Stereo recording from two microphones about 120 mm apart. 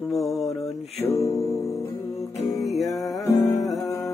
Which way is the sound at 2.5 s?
Centre (ahead or behind).